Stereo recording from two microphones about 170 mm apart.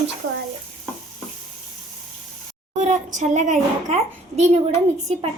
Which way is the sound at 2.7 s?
45° right (ahead or behind).